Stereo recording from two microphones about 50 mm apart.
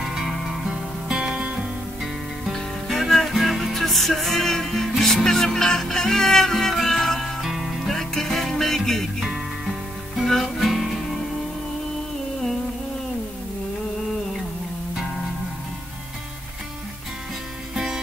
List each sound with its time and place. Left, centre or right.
1.0 s music: centre
2.4 s music: centre
17.7 s music: centre